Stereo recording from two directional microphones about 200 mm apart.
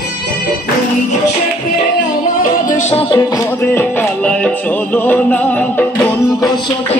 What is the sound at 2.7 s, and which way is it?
Music, 35° left (ahead or behind).